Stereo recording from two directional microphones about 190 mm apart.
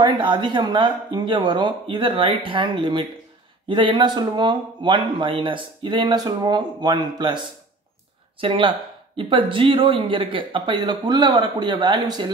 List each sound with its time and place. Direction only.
0.0 s speech: 25° right (ahead or behind)